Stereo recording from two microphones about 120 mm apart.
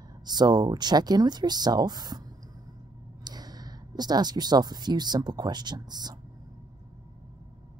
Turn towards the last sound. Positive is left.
turn(degrees=-35)  # may be behind; listen again after turning